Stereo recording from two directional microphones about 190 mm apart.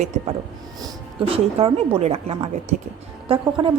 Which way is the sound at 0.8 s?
30° right (ahead or behind).